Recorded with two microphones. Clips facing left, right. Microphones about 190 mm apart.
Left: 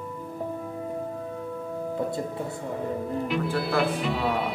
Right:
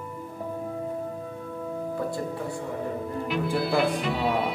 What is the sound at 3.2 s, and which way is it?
Speech, centre (ahead or behind).